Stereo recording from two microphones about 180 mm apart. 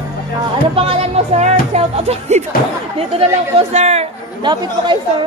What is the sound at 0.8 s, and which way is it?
Music, 35° right (ahead or behind).